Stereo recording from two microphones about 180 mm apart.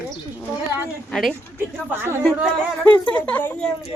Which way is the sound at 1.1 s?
Centre (ahead or behind).